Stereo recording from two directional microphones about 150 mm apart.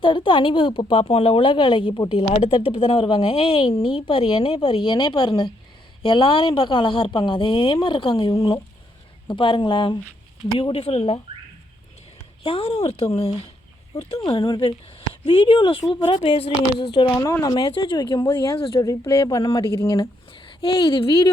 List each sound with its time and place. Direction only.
0.0 s speech: 35° left (ahead or behind)
12.4 s speech: 40° left (ahead or behind)
17.2 s speech: 20° left (ahead or behind)
17.6 s speech: 30° left (ahead or behind)